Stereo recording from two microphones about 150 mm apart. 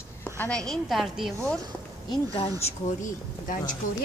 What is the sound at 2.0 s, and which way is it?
Speech, 40° left (ahead or behind).